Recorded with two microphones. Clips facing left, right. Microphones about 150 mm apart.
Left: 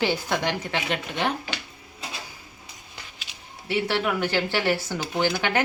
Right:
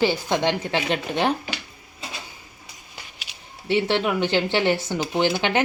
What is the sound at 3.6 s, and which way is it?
Speech, 25° right (ahead or behind).